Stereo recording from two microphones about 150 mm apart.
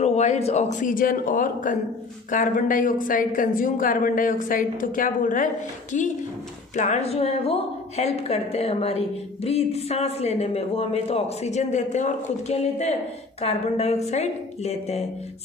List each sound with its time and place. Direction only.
0.0 s speech: 45° left (ahead or behind)